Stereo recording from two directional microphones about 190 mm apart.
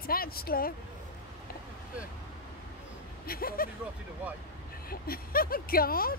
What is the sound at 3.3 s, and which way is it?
Speech, 50° left (ahead or behind).